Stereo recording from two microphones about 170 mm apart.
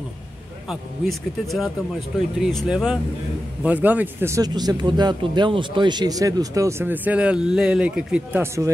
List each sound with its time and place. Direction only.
0.7 s speech: centre (ahead or behind); by 8.7 s 15° right (ahead or behind)